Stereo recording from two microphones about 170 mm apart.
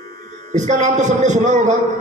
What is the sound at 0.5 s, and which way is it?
A man's voice, 45° right (ahead or behind).